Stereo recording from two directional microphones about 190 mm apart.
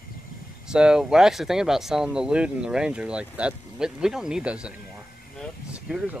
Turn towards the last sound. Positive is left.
turn(degrees=-5)  # may be behind; listen again after turning